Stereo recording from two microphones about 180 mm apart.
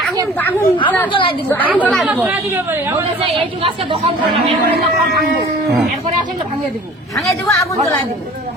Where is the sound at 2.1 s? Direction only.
10° right (ahead or behind).